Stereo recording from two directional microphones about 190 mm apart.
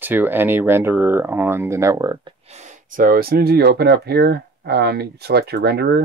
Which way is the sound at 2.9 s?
50° right (ahead or behind).